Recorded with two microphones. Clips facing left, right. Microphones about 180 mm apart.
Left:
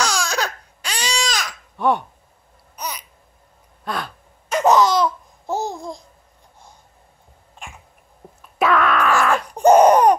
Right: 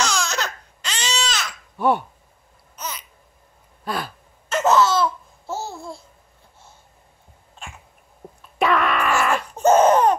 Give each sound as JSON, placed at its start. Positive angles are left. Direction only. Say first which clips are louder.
{"t": 0.0, "sound": "baby cry", "louder": "left 2 dB", "side_deg": 10}
{"t": 1.8, "sound": "speech", "louder": "even", "side_deg": -5}
{"t": 2.8, "sound": "babbling", "louder": "left 3 dB", "side_deg": 15}
{"t": 3.8, "sound": "sigh", "louder": "even", "side_deg": -5}
{"t": 4.5, "sound": "laughter", "louder": "left 2 dB", "side_deg": 15}
{"t": 8.4, "sound": "wail", "louder": "left 2 dB", "side_deg": 0}
{"t": 9.5, "sound": "a sound", "louder": "left 3 dB", "side_deg": 15}